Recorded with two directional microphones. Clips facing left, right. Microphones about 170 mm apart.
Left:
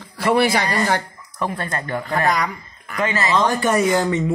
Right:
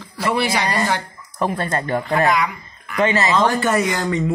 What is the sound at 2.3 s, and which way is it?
Speech, 40° left (ahead or behind).